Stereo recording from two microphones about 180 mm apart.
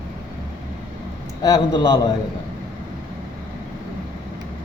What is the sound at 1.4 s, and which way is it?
Speech, 20° left (ahead or behind).